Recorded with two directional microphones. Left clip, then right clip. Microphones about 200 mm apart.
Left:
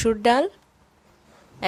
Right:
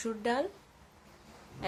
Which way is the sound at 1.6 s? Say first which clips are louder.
Left 12 dB; 50° left (ahead or behind).